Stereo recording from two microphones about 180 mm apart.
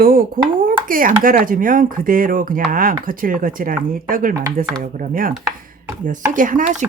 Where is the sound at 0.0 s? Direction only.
55° right (ahead or behind).